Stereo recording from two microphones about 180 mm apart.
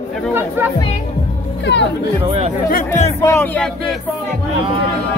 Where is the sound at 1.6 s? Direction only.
75° left (ahead or behind).